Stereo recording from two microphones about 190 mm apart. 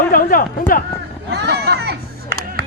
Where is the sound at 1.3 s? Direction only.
60° right (ahead or behind).